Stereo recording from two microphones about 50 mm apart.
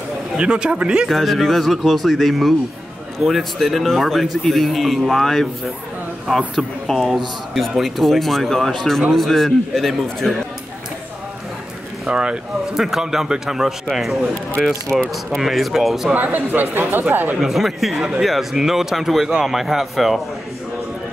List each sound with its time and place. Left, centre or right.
0.4 s speech: centre
1.0 s a man's voice: centre
12.1 s a man's voice: centre
16.2 s speech: right
17.4 s a man's voice: centre
18.0 s a man's voice: centre